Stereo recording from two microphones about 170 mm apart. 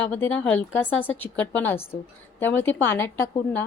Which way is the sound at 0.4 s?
10° left (ahead or behind).